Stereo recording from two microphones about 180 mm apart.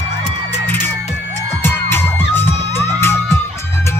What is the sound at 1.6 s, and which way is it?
Music, 10° left (ahead or behind).